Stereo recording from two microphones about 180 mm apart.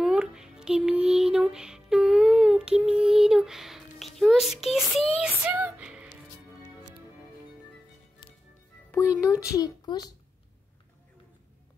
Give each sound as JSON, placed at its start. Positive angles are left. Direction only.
{"t": 0.0, "sound": "music", "side_deg": -5}
{"t": 5.2, "sound": "speech", "side_deg": -10}
{"t": 8.9, "sound": "speech", "side_deg": 15}